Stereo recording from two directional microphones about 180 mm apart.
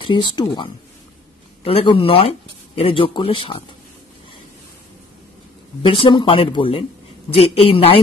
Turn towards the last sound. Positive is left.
turn(degrees=30)  # may be behind; listen again after turning